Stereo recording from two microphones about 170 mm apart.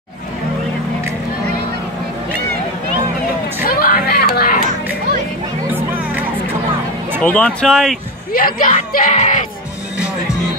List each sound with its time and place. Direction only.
3.6 s a sound: 60° left (ahead or behind)
5.7 s music: 10° right (ahead or behind)
7.2 s speech: 5° left (ahead or behind)
8.3 s speech: 55° left (ahead or behind)
8.9 s music: 45° left (ahead or behind)